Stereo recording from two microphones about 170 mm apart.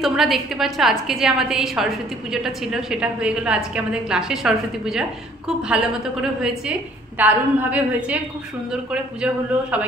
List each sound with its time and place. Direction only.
0.0 s a woman's voice: centre (ahead or behind)
7.2 s a woman's voice: 10° right (ahead or behind)